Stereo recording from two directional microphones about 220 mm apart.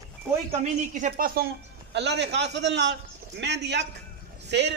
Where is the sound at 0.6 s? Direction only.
35° right (ahead or behind).